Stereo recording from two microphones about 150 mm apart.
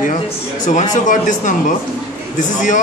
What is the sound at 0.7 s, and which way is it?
Speech, 55° left (ahead or behind).